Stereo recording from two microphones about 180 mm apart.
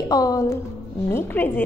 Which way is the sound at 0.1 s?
20° left (ahead or behind).